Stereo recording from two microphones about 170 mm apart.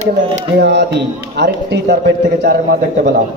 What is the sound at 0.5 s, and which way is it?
A man's voice, 90° right.